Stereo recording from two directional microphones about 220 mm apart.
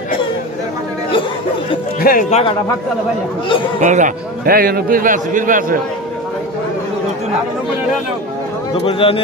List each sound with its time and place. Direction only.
2.0 s speech: 40° left (ahead or behind)
3.8 s a man's voice: 35° right (ahead or behind)
8.7 s speech: 25° left (ahead or behind)